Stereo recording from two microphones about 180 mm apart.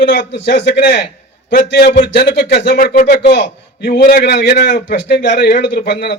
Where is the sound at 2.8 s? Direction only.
50° left (ahead or behind).